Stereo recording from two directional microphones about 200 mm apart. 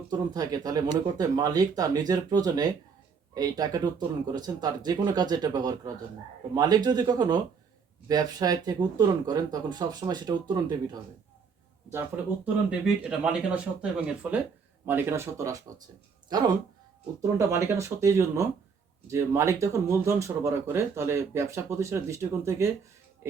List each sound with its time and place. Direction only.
0.1 s speech: 20° right (ahead or behind)
11.9 s speech: 10° right (ahead or behind)